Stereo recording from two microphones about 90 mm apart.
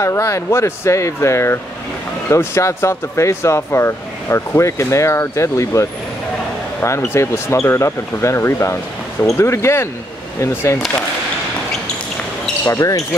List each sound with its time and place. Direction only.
0.0 s speech: 35° left (ahead or behind)
7.2 s speech: 30° left (ahead or behind)
12.6 s speech: 35° left (ahead or behind)